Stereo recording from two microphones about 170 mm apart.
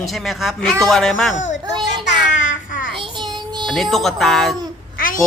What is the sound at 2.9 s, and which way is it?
Child singing, 30° right (ahead or behind).